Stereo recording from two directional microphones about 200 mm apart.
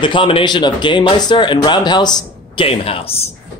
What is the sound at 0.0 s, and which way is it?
Speech, 25° left (ahead or behind).